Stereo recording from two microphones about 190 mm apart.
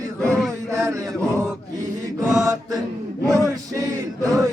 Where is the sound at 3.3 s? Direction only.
20° right (ahead or behind).